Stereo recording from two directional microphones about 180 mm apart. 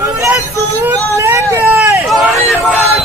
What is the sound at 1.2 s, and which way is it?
Hubbub, 15° right (ahead or behind).